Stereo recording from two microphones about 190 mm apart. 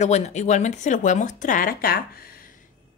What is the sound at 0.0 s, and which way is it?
Speech, 35° left (ahead or behind).